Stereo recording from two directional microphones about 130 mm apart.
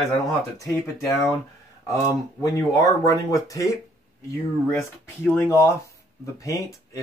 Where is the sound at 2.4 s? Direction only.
25° left (ahead or behind).